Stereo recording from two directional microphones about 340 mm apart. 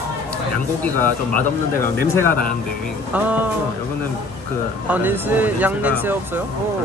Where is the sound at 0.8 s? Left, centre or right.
Right.